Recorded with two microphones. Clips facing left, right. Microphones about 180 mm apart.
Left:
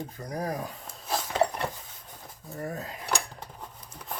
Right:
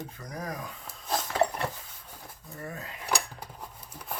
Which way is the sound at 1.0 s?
5° left (ahead or behind).